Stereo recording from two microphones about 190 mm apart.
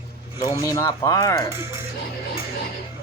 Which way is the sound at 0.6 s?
15° left (ahead or behind).